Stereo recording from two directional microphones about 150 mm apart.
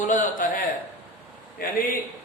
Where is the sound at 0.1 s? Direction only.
60° left (ahead or behind).